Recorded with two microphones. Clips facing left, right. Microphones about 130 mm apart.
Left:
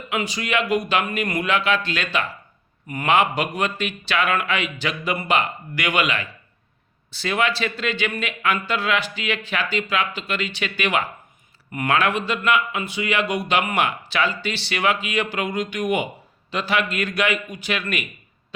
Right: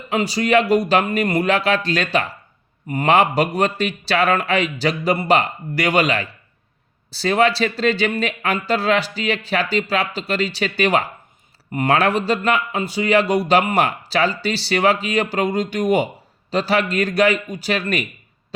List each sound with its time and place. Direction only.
0.1 s speech: 35° right (ahead or behind)